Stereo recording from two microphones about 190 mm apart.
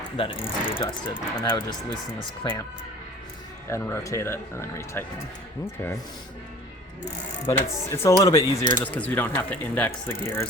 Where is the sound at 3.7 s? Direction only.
15° left (ahead or behind).